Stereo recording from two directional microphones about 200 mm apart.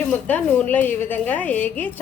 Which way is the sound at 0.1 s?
5° left (ahead or behind).